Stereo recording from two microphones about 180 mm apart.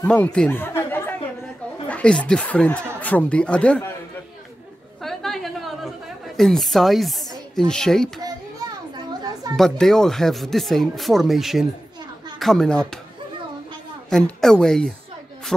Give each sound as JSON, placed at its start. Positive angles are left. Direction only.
{"t": 0.0, "sound": "a sound", "side_deg": 5}
{"t": 1.9, "sound": "speech", "side_deg": 5}
{"t": 5.0, "sound": "a sound", "side_deg": 0}
{"t": 8.9, "sound": "children playing", "side_deg": -20}
{"t": 9.6, "sound": "speech", "side_deg": 5}
{"t": 14.1, "sound": "speech", "side_deg": 5}